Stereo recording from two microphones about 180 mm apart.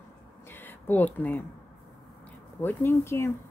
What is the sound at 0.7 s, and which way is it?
Speech, 10° left (ahead or behind).